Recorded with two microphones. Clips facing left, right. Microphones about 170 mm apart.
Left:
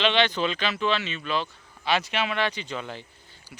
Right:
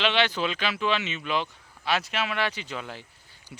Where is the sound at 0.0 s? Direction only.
5° right (ahead or behind).